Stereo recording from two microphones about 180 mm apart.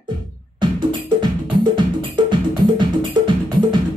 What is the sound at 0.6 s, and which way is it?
Music, 25° right (ahead or behind).